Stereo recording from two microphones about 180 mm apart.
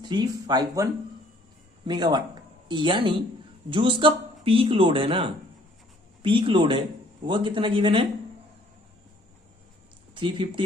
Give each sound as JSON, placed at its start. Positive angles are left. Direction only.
{"t": 0.0, "sound": "speech", "side_deg": -25}
{"t": 1.9, "sound": "speech", "side_deg": -25}
{"t": 10.2, "sound": "speech", "side_deg": -25}